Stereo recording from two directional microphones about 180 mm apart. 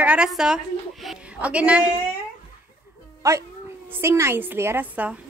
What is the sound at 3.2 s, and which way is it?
A child's voice, 15° right (ahead or behind).